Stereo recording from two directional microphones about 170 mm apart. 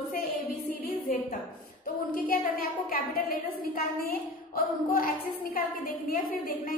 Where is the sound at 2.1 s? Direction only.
55° left (ahead or behind).